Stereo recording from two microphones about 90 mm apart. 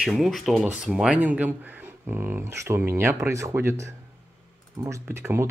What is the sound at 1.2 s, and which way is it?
Speech, 20° right (ahead or behind).